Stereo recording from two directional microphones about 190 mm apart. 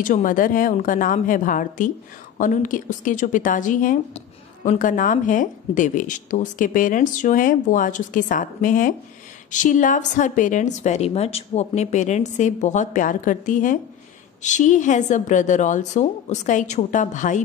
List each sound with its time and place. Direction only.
0.0 s a woman's voice: 45° left (ahead or behind)